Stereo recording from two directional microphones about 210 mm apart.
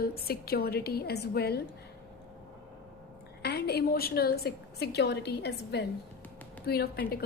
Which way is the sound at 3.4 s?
50° left (ahead or behind).